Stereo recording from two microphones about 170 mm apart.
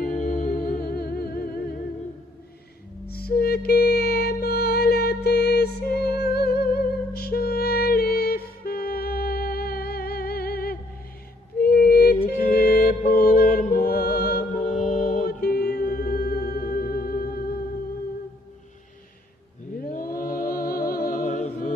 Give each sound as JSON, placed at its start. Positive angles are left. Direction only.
{"t": 0.1, "sound": "humming", "side_deg": 45}
{"t": 0.7, "sound": "humming", "side_deg": 70}
{"t": 3.1, "sound": "music", "side_deg": 65}
{"t": 19.9, "sound": "music", "side_deg": 55}